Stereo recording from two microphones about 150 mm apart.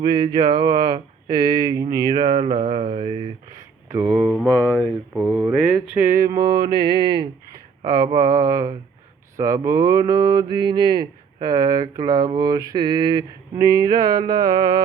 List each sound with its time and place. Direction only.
0.3 s speech: 30° right (ahead or behind)
4.1 s speech: centre (ahead or behind)
4.4 s speech: 10° left (ahead or behind)
5.1 s speech: 15° right (ahead or behind)
6.2 s mantra: 30° right (ahead or behind)